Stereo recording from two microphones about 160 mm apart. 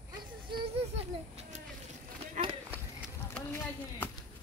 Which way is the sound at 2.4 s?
50° right (ahead or behind).